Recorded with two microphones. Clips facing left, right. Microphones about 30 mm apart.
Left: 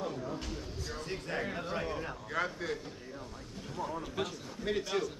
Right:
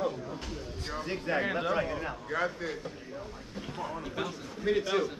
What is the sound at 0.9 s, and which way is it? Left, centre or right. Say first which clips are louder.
Speech: right 7 dB; centre.